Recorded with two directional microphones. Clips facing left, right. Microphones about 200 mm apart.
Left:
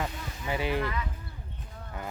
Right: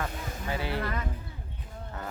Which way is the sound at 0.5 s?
15° left (ahead or behind).